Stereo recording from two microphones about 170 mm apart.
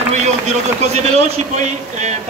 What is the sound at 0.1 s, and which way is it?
A man's voice, 40° right (ahead or behind).